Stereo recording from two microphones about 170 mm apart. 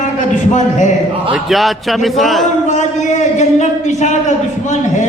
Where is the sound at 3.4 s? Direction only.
45° left (ahead or behind).